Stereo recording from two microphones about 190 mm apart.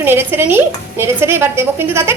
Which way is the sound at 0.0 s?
10° right (ahead or behind).